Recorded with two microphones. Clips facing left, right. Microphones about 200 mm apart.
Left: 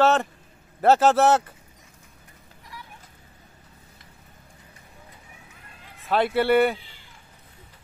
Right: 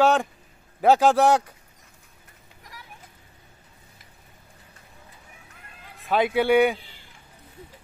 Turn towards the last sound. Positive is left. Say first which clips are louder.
# right 1 dB
turn(degrees=0)  # may be behind; listen again after turning